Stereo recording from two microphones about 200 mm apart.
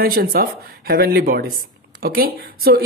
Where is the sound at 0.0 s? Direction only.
50° right (ahead or behind).